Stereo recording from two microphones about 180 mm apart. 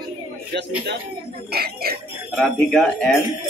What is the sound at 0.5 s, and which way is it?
Speech, 70° right (ahead or behind).